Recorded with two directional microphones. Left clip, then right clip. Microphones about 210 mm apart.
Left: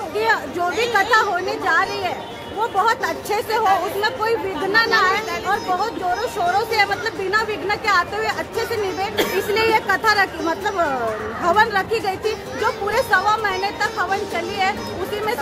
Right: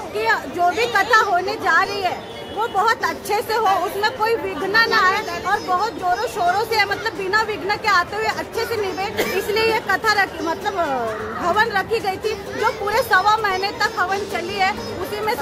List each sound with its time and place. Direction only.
0.2 s a sound: 5° right (ahead or behind)
1.1 s speech: 10° right (ahead or behind)
12.6 s a woman's voice: 15° right (ahead or behind)